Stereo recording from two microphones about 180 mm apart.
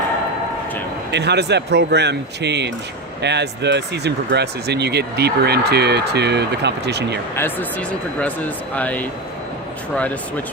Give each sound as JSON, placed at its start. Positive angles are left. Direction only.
{"t": 1.1, "sound": "speech", "side_deg": -70}
{"t": 7.3, "sound": "speech", "side_deg": 10}